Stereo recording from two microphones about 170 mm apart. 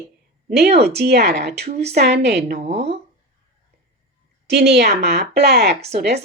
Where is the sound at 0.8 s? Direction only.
70° right (ahead or behind).